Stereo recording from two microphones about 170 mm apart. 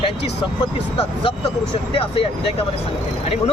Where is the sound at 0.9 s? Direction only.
30° left (ahead or behind).